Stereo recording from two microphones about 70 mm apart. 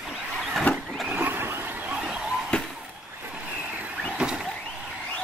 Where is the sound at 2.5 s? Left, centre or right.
Centre.